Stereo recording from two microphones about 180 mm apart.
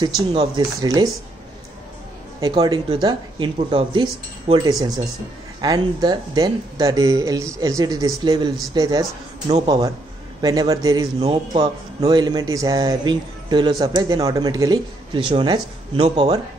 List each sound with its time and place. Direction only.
0.0 s speech: 25° right (ahead or behind)
2.5 s speech: 25° right (ahead or behind)